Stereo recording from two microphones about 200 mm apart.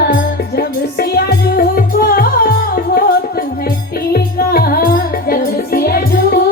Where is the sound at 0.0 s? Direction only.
55° left (ahead or behind).